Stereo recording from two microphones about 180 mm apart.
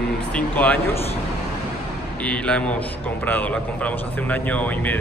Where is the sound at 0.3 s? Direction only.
10° left (ahead or behind).